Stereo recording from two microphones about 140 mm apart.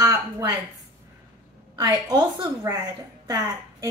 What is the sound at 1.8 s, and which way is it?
A woman's voice, 25° right (ahead or behind).